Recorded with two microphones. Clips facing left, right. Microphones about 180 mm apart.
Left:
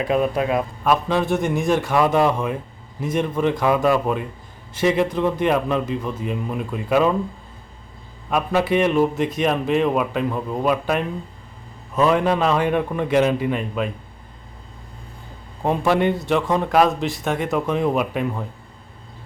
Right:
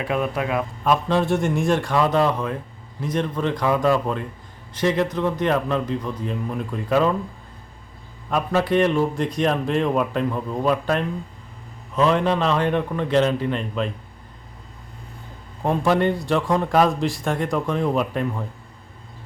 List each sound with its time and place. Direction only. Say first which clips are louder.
0.0 s speech: left 4 dB; 30° left (ahead or behind)
0.9 s a man's voice: even; 5° left (ahead or behind)
8.3 s a man's voice: left 1 dB; 10° left (ahead or behind)
15.6 s a man's voice: left 1 dB; 5° left (ahead or behind)